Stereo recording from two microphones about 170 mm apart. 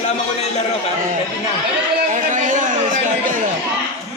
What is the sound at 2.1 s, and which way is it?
Speech, 50° right (ahead or behind).